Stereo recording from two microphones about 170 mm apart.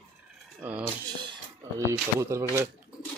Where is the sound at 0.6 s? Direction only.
10° right (ahead or behind).